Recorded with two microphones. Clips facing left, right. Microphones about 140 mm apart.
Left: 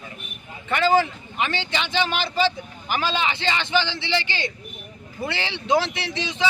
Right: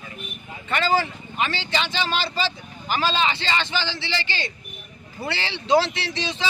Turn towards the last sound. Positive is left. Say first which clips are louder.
# even
turn(degrees=15)  # may be behind; listen again after turning